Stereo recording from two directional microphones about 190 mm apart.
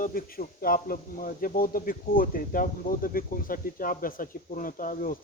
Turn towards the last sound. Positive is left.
turn(degrees=45)  # may be behind; listen again after turning